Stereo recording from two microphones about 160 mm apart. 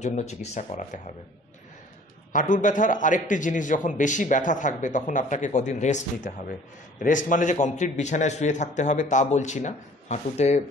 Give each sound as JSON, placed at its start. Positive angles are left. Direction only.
{"t": 0.0, "sound": "a man's voice", "side_deg": 45}
{"t": 2.3, "sound": "a man's voice", "side_deg": 55}